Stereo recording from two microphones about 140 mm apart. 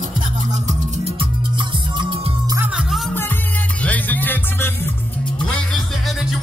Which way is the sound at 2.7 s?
5° right (ahead or behind).